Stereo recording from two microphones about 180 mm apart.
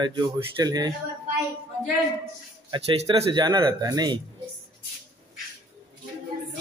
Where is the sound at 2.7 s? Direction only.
30° right (ahead or behind).